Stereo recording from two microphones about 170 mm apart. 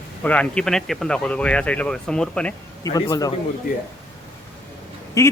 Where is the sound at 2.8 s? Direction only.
20° left (ahead or behind).